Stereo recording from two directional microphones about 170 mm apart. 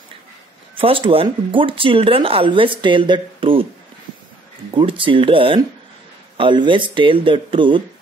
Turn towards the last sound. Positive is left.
turn(degrees=-30)  # may be behind; listen again after turning